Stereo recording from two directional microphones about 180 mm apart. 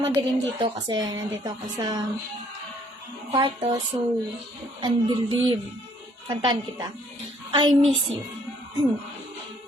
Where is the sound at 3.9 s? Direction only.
30° right (ahead or behind).